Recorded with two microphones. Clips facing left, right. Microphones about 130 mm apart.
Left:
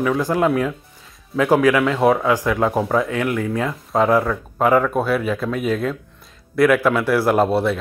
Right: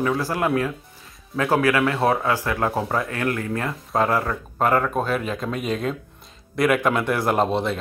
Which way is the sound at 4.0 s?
15° left (ahead or behind).